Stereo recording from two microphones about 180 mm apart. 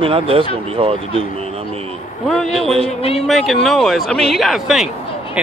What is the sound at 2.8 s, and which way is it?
Speech, 35° left (ahead or behind).